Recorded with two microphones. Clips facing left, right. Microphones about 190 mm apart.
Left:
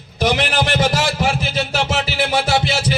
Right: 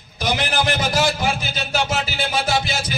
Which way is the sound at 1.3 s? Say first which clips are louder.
Left 4 dB; 70° left (ahead or behind).